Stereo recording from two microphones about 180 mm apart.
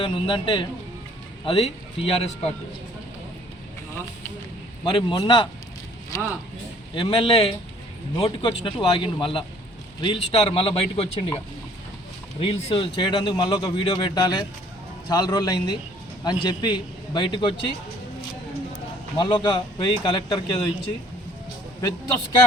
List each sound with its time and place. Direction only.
0.0 s a man's voice: 25° left (ahead or behind)
4.8 s speech: 30° left (ahead or behind)
6.9 s a man's voice: 30° left (ahead or behind)
12.4 s speech: 30° left (ahead or behind)
19.2 s speech: 25° left (ahead or behind)
21.8 s a man's voice: 20° left (ahead or behind)